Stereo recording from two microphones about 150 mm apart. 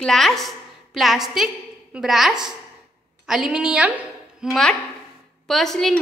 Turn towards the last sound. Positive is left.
turn(degrees=0)  # may be behind; listen again after turning